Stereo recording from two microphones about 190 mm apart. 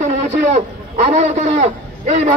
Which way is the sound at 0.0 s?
40° right (ahead or behind).